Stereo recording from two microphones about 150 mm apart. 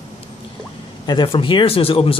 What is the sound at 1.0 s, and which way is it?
Speech, 35° left (ahead or behind).